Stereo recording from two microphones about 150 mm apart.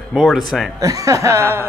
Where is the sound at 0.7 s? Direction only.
20° right (ahead or behind).